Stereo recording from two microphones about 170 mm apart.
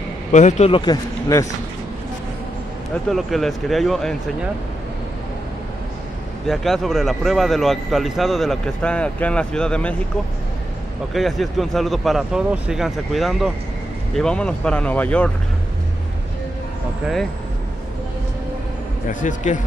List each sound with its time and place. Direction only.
0.3 s speech: 45° left (ahead or behind)
3.1 s speech: centre (ahead or behind)
6.4 s speech: centre (ahead or behind)
11.1 s speech: centre (ahead or behind)
17.0 s speech: centre (ahead or behind)
19.0 s speech: 50° left (ahead or behind)